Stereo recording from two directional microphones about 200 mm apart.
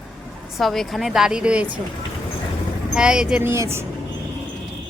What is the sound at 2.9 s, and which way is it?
Speech, 5° right (ahead or behind).